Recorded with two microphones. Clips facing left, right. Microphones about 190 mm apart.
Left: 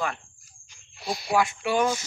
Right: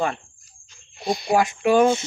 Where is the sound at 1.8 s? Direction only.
25° right (ahead or behind).